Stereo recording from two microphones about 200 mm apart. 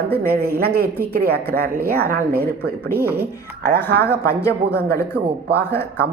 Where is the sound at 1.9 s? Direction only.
50° right (ahead or behind).